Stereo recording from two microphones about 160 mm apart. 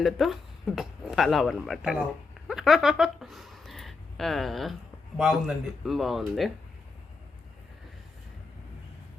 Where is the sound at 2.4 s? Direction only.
Centre (ahead or behind).